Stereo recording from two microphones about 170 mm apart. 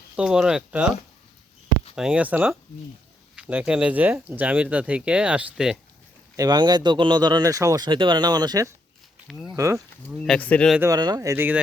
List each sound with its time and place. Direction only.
0.2 s speech: 5° right (ahead or behind)
2.0 s speech: 5° right (ahead or behind)
6.3 s speech: 20° right (ahead or behind)
9.2 s speech: centre (ahead or behind)
9.6 s speech: 20° right (ahead or behind)
10.1 s speech: 5° left (ahead or behind)
10.8 s speech: 20° right (ahead or behind)